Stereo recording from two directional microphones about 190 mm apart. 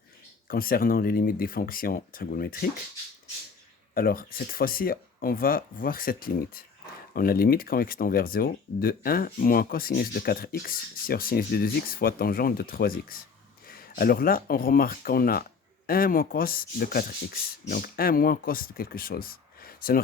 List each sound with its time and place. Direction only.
0.4 s speech: 50° left (ahead or behind)
3.9 s speech: 50° left (ahead or behind)